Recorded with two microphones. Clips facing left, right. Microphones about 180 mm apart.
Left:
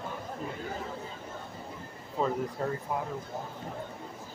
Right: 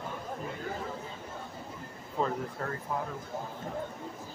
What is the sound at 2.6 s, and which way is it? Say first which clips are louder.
Speech: left 6 dB; 20° left (ahead or behind).